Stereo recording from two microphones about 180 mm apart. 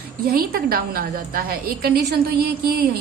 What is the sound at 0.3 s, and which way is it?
A woman's voice, 55° right (ahead or behind).